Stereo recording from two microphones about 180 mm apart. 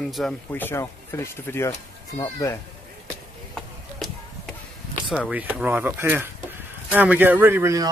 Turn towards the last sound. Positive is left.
turn(degrees=-15)  # may be behind; listen again after turning